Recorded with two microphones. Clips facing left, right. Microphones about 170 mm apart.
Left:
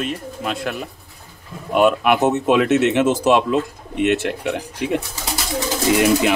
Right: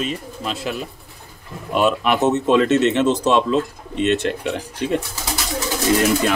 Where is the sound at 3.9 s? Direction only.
65° left (ahead or behind).